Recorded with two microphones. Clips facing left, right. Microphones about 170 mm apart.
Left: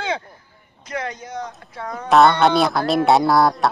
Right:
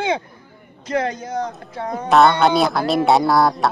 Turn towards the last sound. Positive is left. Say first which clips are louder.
# even
turn(degrees=0)  # may be behind; listen again after turning